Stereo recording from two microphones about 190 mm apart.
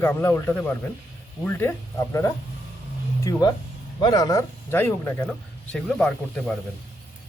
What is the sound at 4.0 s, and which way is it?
Speech, 20° left (ahead or behind).